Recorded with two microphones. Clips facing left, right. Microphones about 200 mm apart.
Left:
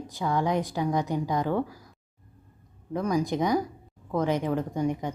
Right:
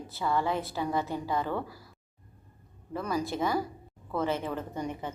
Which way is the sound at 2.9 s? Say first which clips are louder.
Left 5 dB; 15° left (ahead or behind).